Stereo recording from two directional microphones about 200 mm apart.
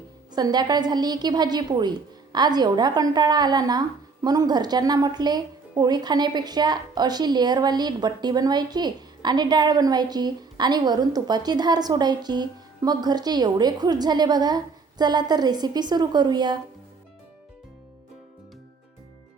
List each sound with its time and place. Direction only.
0.3 s a woman's voice: 20° right (ahead or behind)